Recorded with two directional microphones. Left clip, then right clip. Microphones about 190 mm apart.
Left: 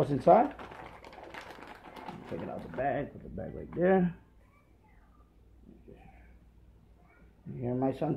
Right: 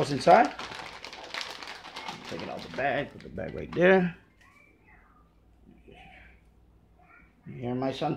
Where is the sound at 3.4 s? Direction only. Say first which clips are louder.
Right 6 dB; 35° right (ahead or behind).